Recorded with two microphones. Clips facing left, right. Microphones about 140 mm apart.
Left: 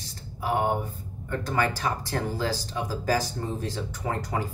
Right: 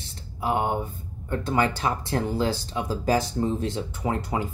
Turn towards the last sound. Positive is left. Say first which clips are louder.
# right 3 dB
turn(degrees=-20)  # may be behind; listen again after turning